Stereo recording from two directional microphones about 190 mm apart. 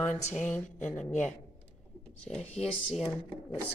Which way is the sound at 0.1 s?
40° left (ahead or behind).